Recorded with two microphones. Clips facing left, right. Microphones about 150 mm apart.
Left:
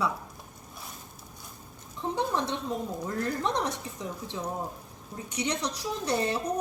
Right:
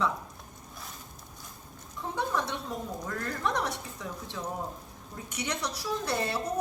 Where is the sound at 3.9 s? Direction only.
20° left (ahead or behind).